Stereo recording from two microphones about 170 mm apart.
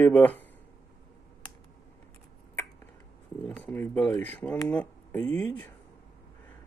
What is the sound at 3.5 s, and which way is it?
Speech, 10° left (ahead or behind).